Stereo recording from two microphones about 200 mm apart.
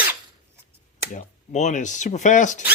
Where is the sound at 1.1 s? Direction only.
40° left (ahead or behind).